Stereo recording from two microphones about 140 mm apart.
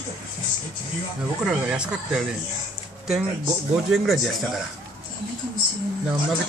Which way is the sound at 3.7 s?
Centre (ahead or behind).